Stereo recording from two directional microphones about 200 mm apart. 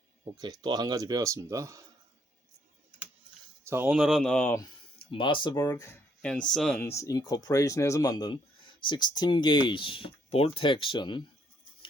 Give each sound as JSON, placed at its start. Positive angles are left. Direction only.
{"t": 0.3, "sound": "speech", "side_deg": -20}
{"t": 3.6, "sound": "speech", "side_deg": -10}
{"t": 4.9, "sound": "speech", "side_deg": 25}
{"t": 6.2, "sound": "speech", "side_deg": 5}
{"t": 6.7, "sound": "speech", "side_deg": 15}